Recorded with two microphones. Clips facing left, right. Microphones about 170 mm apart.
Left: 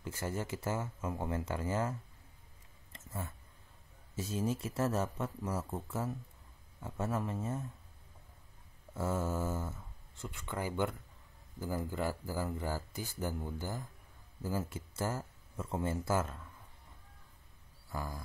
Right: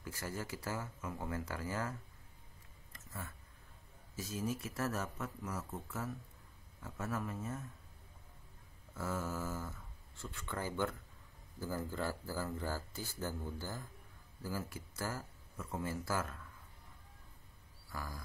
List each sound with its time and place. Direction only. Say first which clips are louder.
0.0 s speech: left 5 dB; 25° left (ahead or behind)
2.9 s a sound: left 5 dB; 25° left (ahead or behind)
4.1 s speech: left 4 dB; 30° left (ahead or behind)
8.9 s speech: left 5 dB; 25° left (ahead or behind)
17.9 s speech: left 5 dB; 25° left (ahead or behind)